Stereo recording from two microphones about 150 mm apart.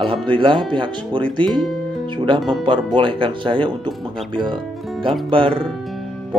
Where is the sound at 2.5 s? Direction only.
30° right (ahead or behind).